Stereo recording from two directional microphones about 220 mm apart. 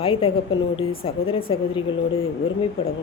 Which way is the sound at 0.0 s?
25° left (ahead or behind).